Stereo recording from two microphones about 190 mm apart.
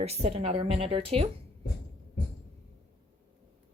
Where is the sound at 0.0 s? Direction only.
30° right (ahead or behind).